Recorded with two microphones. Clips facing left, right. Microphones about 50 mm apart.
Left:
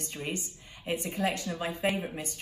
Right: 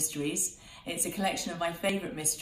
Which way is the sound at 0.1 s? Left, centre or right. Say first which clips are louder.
Right 3 dB; left.